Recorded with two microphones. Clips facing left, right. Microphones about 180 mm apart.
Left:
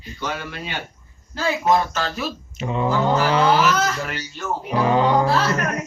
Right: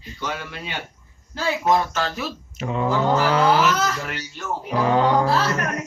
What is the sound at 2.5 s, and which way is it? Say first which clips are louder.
Speech: even; centre (ahead or behind).